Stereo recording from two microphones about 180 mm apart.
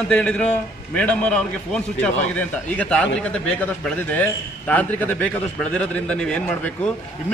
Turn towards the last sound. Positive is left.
turn(degrees=5)  # may be behind; listen again after turning